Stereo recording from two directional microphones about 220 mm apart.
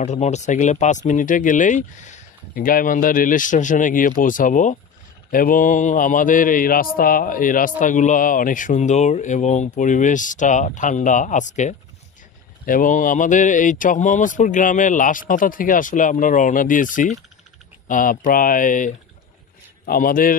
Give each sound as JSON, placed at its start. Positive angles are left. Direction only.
{"t": 0.0, "sound": "speech", "side_deg": 30}